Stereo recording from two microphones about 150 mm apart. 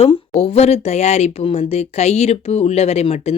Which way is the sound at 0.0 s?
40° left (ahead or behind).